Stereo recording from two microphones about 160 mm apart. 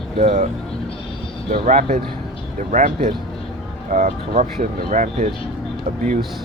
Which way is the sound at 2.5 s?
55° right (ahead or behind).